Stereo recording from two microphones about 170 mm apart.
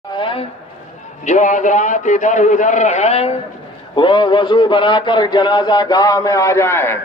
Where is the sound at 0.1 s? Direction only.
30° left (ahead or behind).